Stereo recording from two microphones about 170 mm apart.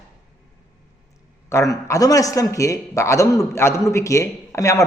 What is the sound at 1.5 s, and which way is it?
A man's voice, 20° left (ahead or behind).